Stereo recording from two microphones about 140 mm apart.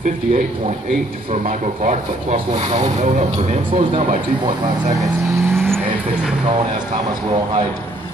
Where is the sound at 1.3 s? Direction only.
65° right (ahead or behind); by 4.0 s 45° right (ahead or behind).